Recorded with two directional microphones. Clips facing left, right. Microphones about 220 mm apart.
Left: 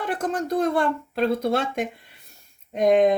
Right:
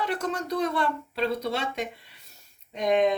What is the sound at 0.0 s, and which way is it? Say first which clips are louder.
Speech: left 3 dB; 50° left (ahead or behind).